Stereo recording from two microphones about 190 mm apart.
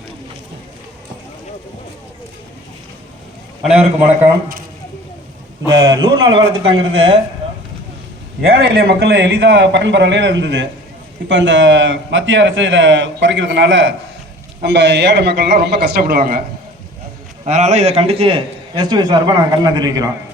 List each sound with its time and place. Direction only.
3.6 s a man's voice: 5° right (ahead or behind)
5.6 s speech: 25° right (ahead or behind)
8.4 s a man's voice: 55° right (ahead or behind); by 13.9 s 80° right
14.6 s a man's voice: 70° right (ahead or behind); by 16.4 s 50° right (ahead or behind)
17.4 s a man's voice: 40° right (ahead or behind); by 20.1 s 20° right (ahead or behind)